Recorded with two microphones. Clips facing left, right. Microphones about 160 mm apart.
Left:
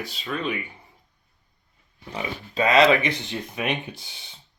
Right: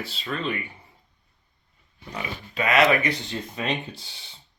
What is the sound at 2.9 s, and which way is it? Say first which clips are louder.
Speech: left 1 dB; 20° left (ahead or behind).